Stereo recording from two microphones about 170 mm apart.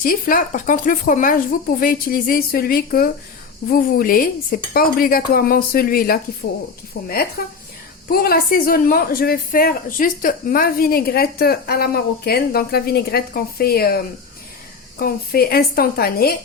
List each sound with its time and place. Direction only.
0.0 s a woman's voice: 55° left (ahead or behind)
7.0 s speech: 90° left
7.4 s a woman's voice: 65° left (ahead or behind)